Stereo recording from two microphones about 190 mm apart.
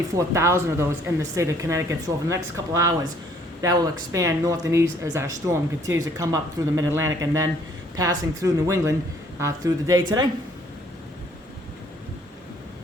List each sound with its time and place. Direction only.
0.1 s speech: 15° right (ahead or behind)